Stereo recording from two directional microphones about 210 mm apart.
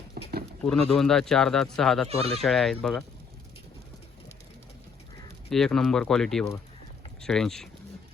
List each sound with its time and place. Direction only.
0.1 s a sound: 45° right (ahead or behind)
0.6 s speech: 5° left (ahead or behind)
5.5 s speech: centre (ahead or behind)